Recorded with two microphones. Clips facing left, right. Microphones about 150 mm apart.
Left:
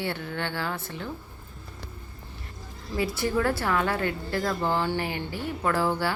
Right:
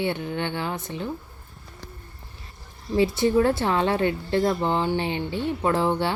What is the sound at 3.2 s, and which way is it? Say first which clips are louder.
A woman's voice: right 4 dB; 25° right (ahead or behind).